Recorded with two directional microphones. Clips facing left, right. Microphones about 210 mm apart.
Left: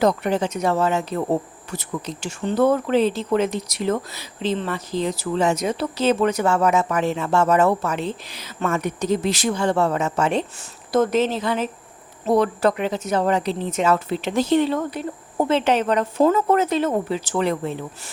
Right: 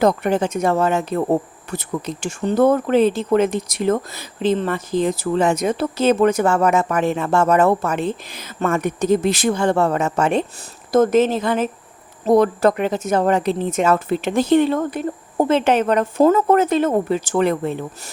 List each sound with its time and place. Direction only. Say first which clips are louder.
0.0 s speech: right 3 dB; 50° right (ahead or behind)
2.4 s speech: right 3 dB; 45° right (ahead or behind)